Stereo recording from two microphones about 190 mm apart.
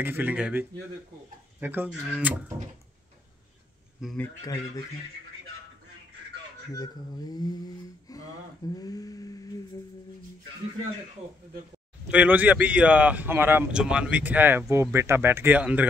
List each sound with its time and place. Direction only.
0.0 s speech: 10° right (ahead or behind)
4.0 s speech: centre (ahead or behind)
6.7 s speech: 20° left (ahead or behind)
12.1 s speech: 5° right (ahead or behind)